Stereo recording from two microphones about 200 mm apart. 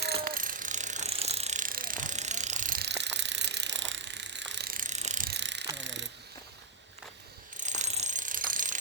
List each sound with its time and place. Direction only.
0.0 s ratchet: 50° right (ahead or behind)
5.3 s ratchet: 60° right (ahead or behind)
5.7 s a sound: 65° right (ahead or behind)
7.5 s ratchet: 35° right (ahead or behind)